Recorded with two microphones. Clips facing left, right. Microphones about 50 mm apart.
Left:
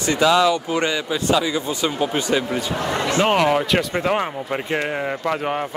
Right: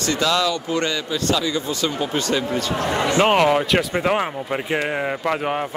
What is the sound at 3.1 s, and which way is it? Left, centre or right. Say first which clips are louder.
Speech: right 1 dB; centre.